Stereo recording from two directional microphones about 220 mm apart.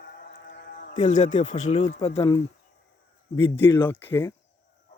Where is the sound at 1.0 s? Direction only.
35° left (ahead or behind).